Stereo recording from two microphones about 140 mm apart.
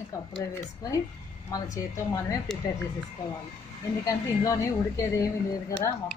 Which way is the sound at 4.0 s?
25° left (ahead or behind).